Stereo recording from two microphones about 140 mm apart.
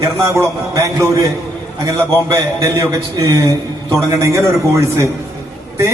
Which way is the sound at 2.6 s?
20° right (ahead or behind).